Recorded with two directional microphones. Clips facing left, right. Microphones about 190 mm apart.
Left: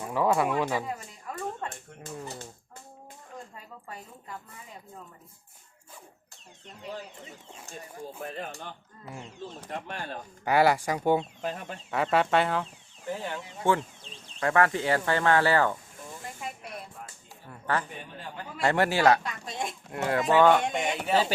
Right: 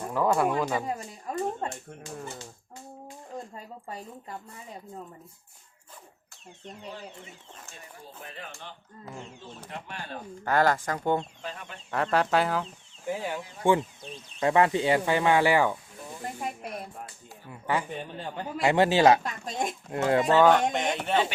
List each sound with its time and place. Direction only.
0.0 s speech: 5° left (ahead or behind)
0.9 s a sound: 35° right (ahead or behind)
3.3 s speech: 35° right (ahead or behind)
8.2 s speech: 45° left (ahead or behind)
10.4 s speech: 10° left (ahead or behind)
11.4 s speech: 40° left (ahead or behind)
11.9 s speech: centre (ahead or behind); by 15.8 s 15° right (ahead or behind)
16.4 s speech: 45° right (ahead or behind)
17.5 s speech: 10° right (ahead or behind)
19.2 s speech: 45° right (ahead or behind)
19.9 s speech: 25° right (ahead or behind)
20.4 s speech: centre (ahead or behind)